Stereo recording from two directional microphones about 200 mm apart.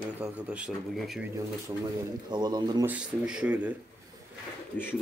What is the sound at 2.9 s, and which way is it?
Speech, 5° right (ahead or behind).